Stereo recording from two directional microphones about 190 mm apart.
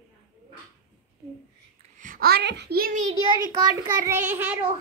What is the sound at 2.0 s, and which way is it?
A child's voice, 50° right (ahead or behind).